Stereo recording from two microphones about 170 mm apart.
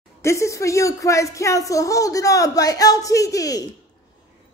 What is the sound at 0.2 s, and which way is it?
Speech, 15° left (ahead or behind).